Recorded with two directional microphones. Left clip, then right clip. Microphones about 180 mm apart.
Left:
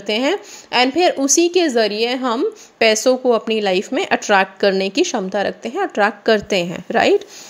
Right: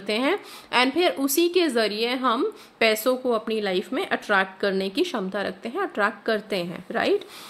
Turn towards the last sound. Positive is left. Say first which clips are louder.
# left 9 dB
turn(degrees=35)  # may be behind; listen again after turning